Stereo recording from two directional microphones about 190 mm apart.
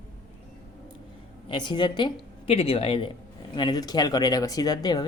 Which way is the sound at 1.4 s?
25° left (ahead or behind).